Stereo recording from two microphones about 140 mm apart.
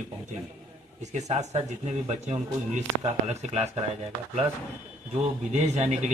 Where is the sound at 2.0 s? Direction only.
55° right (ahead or behind).